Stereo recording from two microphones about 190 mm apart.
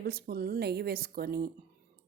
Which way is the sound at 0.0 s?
55° right (ahead or behind).